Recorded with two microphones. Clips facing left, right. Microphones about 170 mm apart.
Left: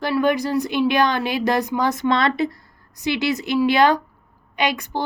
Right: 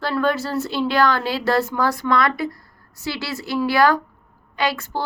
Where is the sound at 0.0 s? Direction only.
15° left (ahead or behind).